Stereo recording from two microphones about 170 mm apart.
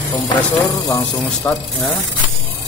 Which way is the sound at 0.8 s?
20° left (ahead or behind).